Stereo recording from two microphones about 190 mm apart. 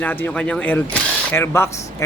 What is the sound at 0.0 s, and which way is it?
Speech, 10° left (ahead or behind).